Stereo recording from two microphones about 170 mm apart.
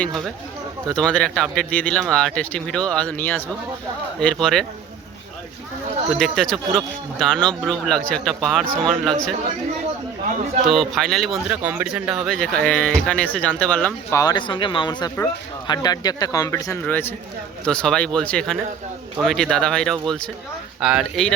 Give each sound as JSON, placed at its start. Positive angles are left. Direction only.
{"t": 0.9, "sound": "speech", "side_deg": 5}
{"t": 6.1, "sound": "speech", "side_deg": 0}
{"t": 10.7, "sound": "speech", "side_deg": 0}
{"t": 11.5, "sound": "speech", "side_deg": -10}
{"t": 14.2, "sound": "a man's voice", "side_deg": 25}